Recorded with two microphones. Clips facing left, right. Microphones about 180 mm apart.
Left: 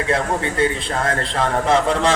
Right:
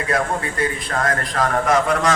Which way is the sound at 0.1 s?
25° left (ahead or behind).